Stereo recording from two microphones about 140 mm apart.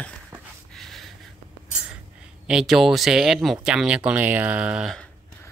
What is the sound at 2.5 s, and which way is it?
Speech, centre (ahead or behind).